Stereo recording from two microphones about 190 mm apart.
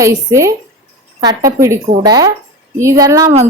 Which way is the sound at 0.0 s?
15° right (ahead or behind).